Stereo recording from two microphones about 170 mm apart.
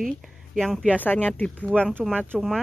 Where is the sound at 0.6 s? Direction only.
Centre (ahead or behind).